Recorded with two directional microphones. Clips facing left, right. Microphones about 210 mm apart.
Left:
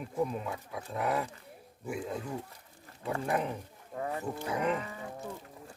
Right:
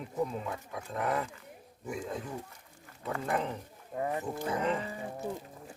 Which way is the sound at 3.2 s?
10° left (ahead or behind).